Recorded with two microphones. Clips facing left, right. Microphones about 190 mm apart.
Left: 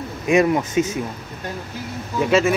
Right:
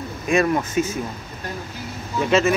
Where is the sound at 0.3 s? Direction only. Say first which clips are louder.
Left 3 dB; 20° left (ahead or behind).